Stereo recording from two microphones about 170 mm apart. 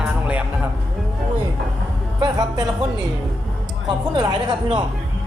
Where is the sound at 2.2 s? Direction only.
25° right (ahead or behind).